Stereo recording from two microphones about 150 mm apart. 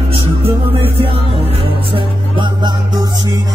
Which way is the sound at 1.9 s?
30° right (ahead or behind).